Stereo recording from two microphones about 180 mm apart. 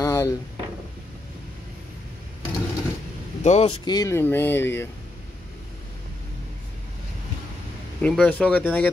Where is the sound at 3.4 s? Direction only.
35° left (ahead or behind).